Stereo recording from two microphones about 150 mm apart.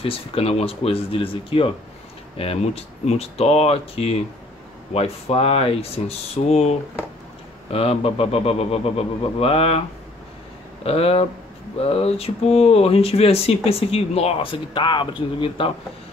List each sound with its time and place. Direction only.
0.0 s speech: 40° left (ahead or behind)